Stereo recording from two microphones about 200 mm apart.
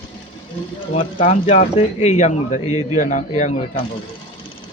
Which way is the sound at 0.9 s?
35° left (ahead or behind).